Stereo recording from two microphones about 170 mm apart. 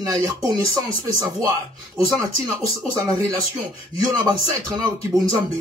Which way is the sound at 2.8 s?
20° right (ahead or behind).